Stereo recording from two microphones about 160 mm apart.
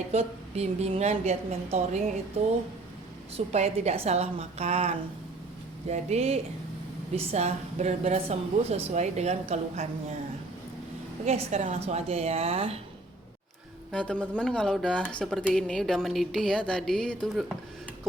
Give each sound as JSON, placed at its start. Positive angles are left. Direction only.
{"t": 0.1, "sound": "a woman's voice", "side_deg": -40}
{"t": 11.3, "sound": "a woman's voice", "side_deg": -45}
{"t": 13.9, "sound": "speech", "side_deg": 5}